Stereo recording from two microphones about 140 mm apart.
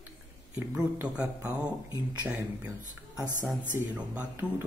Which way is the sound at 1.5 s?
15° left (ahead or behind).